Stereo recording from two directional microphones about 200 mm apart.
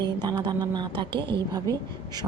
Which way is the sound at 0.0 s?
20° right (ahead or behind).